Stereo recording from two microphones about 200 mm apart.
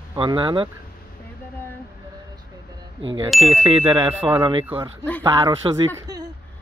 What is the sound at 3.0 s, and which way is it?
Speech, 70° right (ahead or behind).